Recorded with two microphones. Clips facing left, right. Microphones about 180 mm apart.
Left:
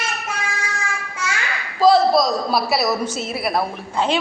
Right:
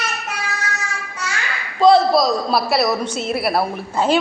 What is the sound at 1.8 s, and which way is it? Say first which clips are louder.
A man's voice: right 1 dB; centre (ahead or behind).